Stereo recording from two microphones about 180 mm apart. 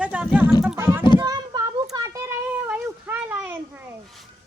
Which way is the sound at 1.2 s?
20° right (ahead or behind).